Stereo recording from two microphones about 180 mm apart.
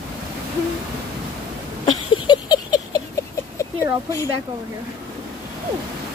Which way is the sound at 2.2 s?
25° left (ahead or behind).